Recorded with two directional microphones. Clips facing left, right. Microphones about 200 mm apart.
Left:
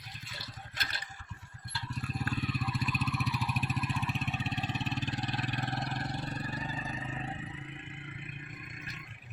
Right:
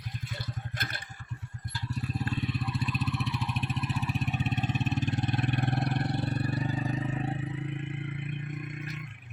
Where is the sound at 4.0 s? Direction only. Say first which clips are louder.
Right 4 dB; 10° right (ahead or behind).